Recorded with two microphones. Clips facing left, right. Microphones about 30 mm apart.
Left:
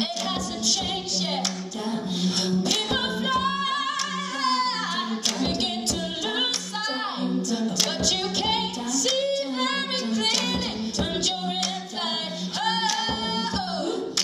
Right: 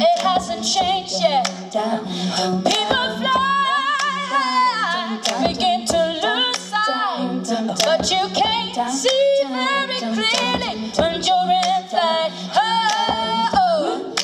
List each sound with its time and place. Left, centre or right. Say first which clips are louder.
0.0 s music: right 12 dB; right
1.9 s a sound: right 4 dB; right
2.9 s music: right 6 dB; right
5.4 s music: right 8 dB; right
7.6 s singing: right 7 dB; right
9.3 s a capella: right 7 dB; right
11.3 s music: right 12 dB; right